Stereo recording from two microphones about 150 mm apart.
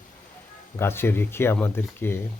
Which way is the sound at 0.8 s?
15° left (ahead or behind).